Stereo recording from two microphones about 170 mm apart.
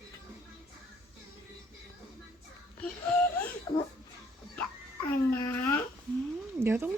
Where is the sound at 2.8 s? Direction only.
10° left (ahead or behind).